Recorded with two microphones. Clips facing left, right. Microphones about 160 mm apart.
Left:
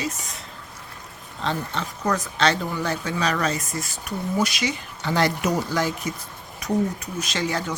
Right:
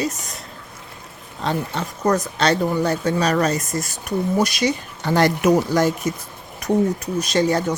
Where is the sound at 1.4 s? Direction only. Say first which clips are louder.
Right 4 dB; 45° right (ahead or behind).